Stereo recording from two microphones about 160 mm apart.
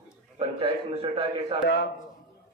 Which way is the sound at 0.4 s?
35° right (ahead or behind).